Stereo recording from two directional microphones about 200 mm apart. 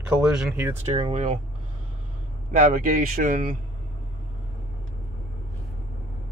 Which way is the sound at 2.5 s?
40° right (ahead or behind).